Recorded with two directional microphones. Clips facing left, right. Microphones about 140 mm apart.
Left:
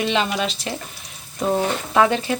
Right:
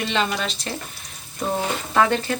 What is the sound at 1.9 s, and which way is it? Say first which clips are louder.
Speech: left 2 dB; 10° left (ahead or behind).